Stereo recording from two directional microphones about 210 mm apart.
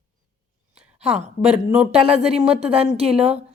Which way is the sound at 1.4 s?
5° right (ahead or behind).